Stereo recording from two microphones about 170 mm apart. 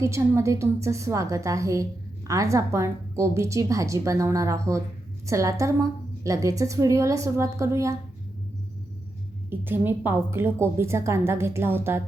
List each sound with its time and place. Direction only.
0.0 s a woman's voice: 15° right (ahead or behind)
9.5 s a woman's voice: 10° right (ahead or behind)